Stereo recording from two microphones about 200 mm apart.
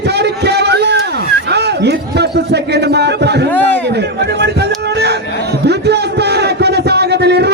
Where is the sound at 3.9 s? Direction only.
55° right (ahead or behind).